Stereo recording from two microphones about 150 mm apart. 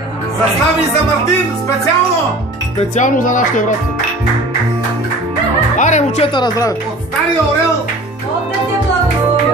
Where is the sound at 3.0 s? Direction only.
60° left (ahead or behind).